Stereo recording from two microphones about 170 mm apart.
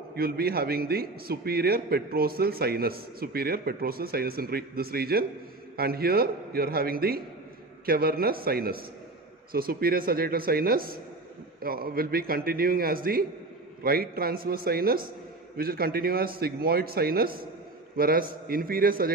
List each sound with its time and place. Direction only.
0.1 s a man's voice: 65° right (ahead or behind)